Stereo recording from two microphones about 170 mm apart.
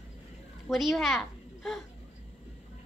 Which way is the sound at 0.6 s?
Centre (ahead or behind).